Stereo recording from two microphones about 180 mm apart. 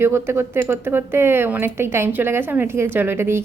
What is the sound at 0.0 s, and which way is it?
A woman's voice, 15° right (ahead or behind).